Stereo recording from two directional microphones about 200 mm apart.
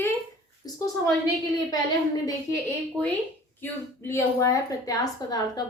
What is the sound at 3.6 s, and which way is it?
A woman's voice, 15° left (ahead or behind).